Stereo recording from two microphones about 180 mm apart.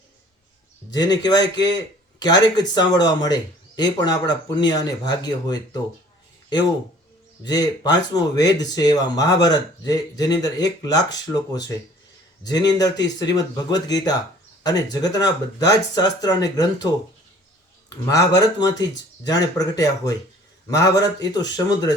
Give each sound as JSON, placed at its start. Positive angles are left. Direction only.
{"t": 1.2, "sound": "speech", "side_deg": 20}
{"t": 7.4, "sound": "speech", "side_deg": 20}